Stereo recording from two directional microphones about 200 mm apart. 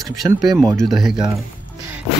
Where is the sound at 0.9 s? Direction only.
Centre (ahead or behind).